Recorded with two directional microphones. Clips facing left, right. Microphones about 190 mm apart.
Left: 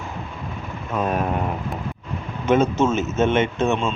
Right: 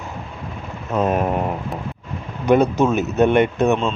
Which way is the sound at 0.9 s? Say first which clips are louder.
Right 4 dB; 20° right (ahead or behind).